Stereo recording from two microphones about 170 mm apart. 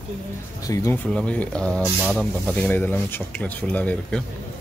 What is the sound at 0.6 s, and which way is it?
Speech, 20° left (ahead or behind).